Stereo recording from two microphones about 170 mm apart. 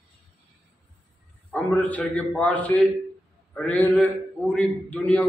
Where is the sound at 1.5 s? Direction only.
10° left (ahead or behind).